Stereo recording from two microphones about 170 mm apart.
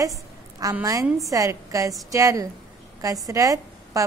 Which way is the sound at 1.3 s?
20° right (ahead or behind).